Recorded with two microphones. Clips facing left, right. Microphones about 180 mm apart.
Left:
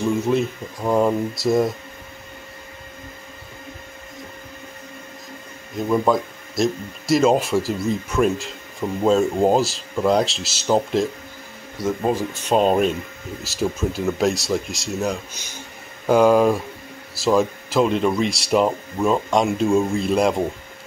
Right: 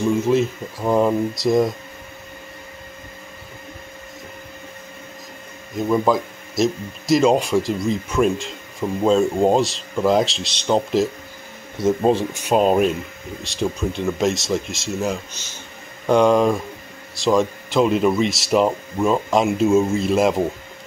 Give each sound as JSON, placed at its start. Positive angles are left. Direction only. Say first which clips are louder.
{"t": 0.1, "sound": "speech", "louder": "right 2 dB", "side_deg": 0}
{"t": 5.9, "sound": "speech", "louder": "even", "side_deg": 0}
{"t": 11.8, "sound": "speech", "louder": "right 4 dB", "side_deg": -25}
{"t": 12.4, "sound": "speech", "louder": "right 1 dB", "side_deg": -5}